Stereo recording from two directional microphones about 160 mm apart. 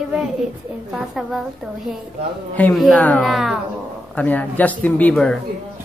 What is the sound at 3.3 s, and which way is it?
Speech, centre (ahead or behind).